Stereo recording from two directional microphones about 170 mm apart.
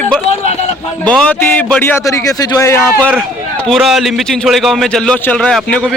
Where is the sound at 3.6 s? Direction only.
Centre (ahead or behind).